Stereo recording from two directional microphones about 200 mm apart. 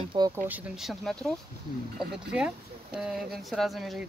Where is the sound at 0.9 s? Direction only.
Centre (ahead or behind).